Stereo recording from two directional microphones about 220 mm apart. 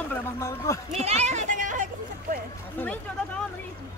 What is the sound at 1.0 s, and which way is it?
Speech, 30° right (ahead or behind).